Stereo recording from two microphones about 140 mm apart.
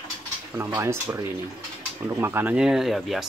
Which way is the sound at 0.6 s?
20° right (ahead or behind).